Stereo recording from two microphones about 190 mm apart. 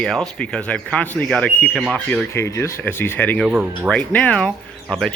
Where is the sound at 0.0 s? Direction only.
5° left (ahead or behind).